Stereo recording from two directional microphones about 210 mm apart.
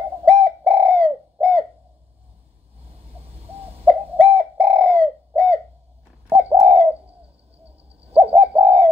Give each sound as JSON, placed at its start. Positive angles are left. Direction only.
{"t": 0.2, "sound": "bird", "side_deg": -30}
{"t": 3.2, "sound": "owl", "side_deg": -30}
{"t": 4.2, "sound": "bird", "side_deg": -30}
{"t": 8.0, "sound": "bird", "side_deg": -30}